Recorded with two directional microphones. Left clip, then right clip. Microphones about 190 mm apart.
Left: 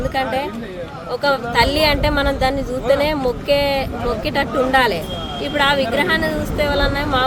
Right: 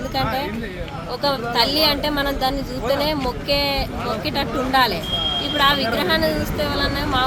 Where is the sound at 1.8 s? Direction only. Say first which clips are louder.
Left 3 dB; 35° left (ahead or behind).